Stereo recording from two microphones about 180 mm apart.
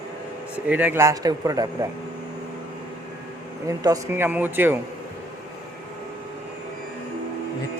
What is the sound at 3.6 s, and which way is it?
Speech, 20° right (ahead or behind).